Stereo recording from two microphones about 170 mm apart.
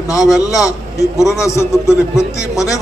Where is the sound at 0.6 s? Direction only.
20° left (ahead or behind).